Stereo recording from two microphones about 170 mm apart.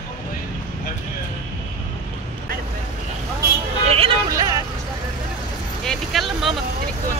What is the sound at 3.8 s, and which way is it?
Vehicle, 35° right (ahead or behind).